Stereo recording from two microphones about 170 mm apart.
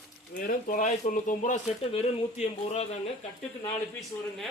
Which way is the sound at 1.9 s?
40° left (ahead or behind).